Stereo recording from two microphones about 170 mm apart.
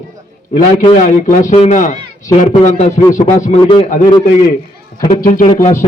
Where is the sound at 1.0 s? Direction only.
50° left (ahead or behind).